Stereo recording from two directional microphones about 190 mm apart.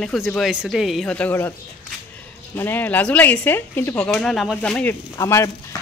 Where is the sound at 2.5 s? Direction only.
10° left (ahead or behind).